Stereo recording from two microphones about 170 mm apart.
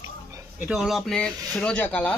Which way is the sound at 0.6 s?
5° right (ahead or behind).